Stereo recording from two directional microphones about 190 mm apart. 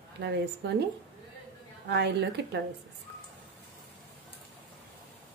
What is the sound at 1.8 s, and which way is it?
Speech, 65° right (ahead or behind).